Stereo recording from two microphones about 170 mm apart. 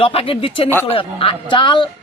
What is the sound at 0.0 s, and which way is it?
A man's voice, 35° left (ahead or behind).